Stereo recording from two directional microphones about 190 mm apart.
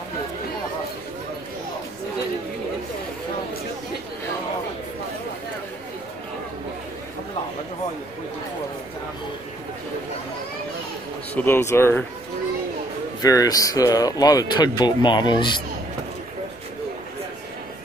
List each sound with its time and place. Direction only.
11.3 s speech: 10° left (ahead or behind)
13.2 s speech: 20° left (ahead or behind)